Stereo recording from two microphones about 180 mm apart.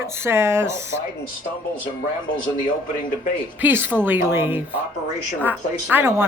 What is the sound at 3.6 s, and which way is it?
Speech, 10° right (ahead or behind).